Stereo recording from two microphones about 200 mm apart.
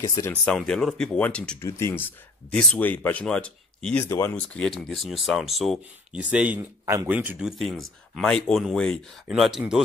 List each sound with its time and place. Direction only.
0.0 s speech: 20° left (ahead or behind)
0.3 s speech: 5° left (ahead or behind)